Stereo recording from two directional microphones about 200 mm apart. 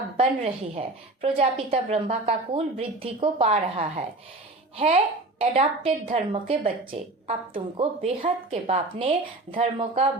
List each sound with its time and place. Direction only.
0.2 s a woman's voice: 30° right (ahead or behind)
5.4 s a woman's voice: 30° right (ahead or behind)